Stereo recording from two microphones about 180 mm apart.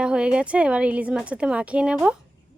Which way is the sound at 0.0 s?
5° right (ahead or behind).